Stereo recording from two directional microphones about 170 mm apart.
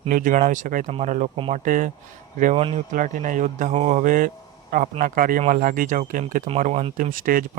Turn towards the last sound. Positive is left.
turn(degrees=-55)  # may be behind; listen again after turning